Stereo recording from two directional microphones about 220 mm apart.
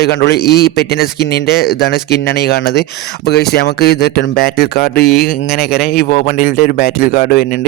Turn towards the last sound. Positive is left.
turn(degrees=45)  # may be behind; listen again after turning